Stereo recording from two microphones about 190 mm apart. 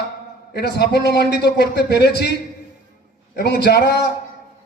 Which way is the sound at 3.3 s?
60° left (ahead or behind).